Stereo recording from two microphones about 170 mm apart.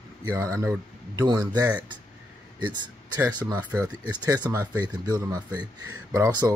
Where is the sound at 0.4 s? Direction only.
15° right (ahead or behind).